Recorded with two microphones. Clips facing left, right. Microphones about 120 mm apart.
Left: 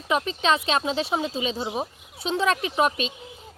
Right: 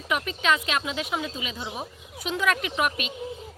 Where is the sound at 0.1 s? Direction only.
30° left (ahead or behind).